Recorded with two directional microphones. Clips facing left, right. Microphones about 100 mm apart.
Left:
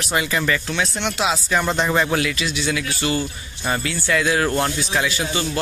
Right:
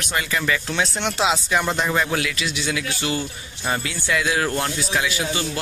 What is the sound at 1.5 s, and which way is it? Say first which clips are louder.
Speech: left 2 dB; 5° right (ahead or behind).